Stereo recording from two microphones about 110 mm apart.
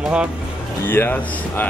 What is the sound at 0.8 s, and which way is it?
Speech, 20° left (ahead or behind).